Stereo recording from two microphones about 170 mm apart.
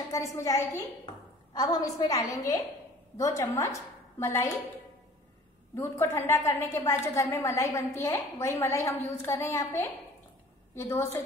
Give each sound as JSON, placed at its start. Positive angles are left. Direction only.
{"t": 0.1, "sound": "a woman's voice", "side_deg": 20}
{"t": 5.8, "sound": "a woman's voice", "side_deg": 15}